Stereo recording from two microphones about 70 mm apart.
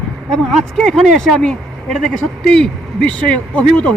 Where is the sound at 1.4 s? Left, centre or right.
Centre.